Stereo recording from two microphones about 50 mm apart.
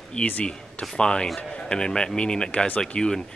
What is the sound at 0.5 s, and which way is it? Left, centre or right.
A man's voice, centre.